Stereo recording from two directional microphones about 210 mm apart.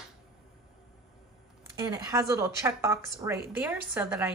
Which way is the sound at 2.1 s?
15° right (ahead or behind).